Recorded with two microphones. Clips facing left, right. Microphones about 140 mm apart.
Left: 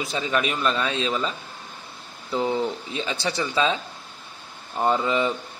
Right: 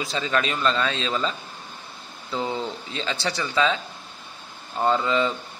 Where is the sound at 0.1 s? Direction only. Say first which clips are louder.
Even; 15° left (ahead or behind).